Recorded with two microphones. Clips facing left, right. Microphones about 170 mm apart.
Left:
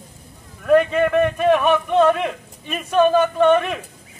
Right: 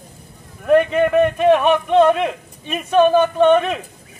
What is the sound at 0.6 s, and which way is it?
Speech, 15° right (ahead or behind).